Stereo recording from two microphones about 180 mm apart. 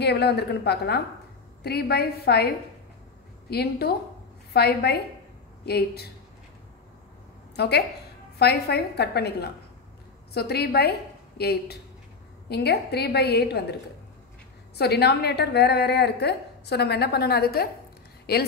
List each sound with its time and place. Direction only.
0.0 s a woman's voice: 65° left (ahead or behind)
7.5 s a woman's voice: 65° left (ahead or behind)
14.8 s a woman's voice: 65° left (ahead or behind)